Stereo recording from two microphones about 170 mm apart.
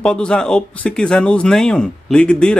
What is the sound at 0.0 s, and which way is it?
Speech, 5° left (ahead or behind).